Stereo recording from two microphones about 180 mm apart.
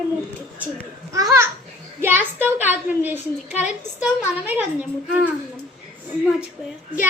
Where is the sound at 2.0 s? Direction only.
10° right (ahead or behind).